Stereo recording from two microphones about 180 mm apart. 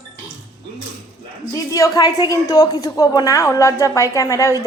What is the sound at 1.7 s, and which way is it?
A woman's voice, 20° left (ahead or behind).